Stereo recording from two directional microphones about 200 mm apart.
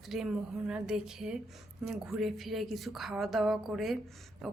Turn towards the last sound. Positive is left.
turn(degrees=0)  # may be behind; listen again after turning